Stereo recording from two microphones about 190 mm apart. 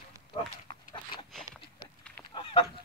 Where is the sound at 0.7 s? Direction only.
25° left (ahead or behind).